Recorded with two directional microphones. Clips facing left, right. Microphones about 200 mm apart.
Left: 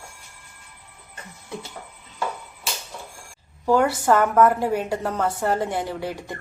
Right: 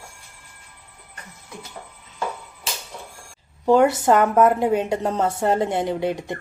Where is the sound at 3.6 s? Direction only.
20° right (ahead or behind).